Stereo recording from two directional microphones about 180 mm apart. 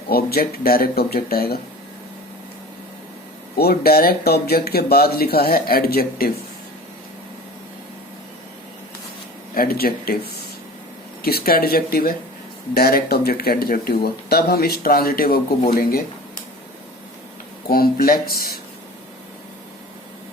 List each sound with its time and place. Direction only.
0.1 s speech: 60° left (ahead or behind)
3.6 s speech: 60° left (ahead or behind)
9.6 s speech: 55° left (ahead or behind)
11.2 s speech: 60° left (ahead or behind)
17.7 s speech: 55° left (ahead or behind)